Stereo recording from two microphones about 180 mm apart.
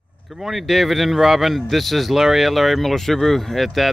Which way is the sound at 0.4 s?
Centre (ahead or behind).